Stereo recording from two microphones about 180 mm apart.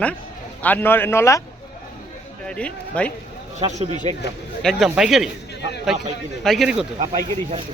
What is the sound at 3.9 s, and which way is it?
Speech, 25° left (ahead or behind).